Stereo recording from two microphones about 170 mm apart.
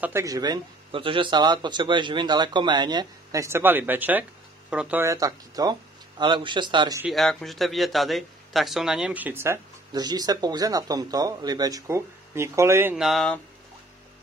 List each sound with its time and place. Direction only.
0.0 s speech: 15° right (ahead or behind)
7.1 s speech: centre (ahead or behind); by 12.9 s 15° right (ahead or behind)
12.9 s speech: centre (ahead or behind)